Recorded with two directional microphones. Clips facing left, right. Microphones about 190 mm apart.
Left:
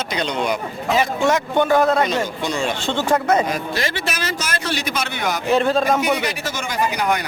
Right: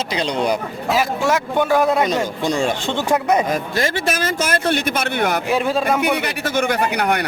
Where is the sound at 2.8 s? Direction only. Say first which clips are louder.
Even; 15° right (ahead or behind).